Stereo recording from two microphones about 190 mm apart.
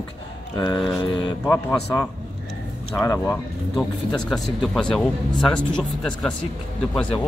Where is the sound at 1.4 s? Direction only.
10° left (ahead or behind).